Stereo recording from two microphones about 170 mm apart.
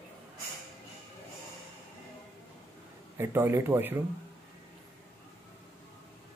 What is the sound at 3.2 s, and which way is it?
Speech, 15° right (ahead or behind).